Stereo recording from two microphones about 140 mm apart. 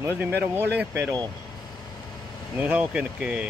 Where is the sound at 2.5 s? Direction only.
10° right (ahead or behind).